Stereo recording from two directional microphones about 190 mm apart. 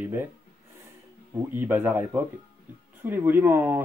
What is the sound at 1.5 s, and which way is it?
Speech, 10° right (ahead or behind).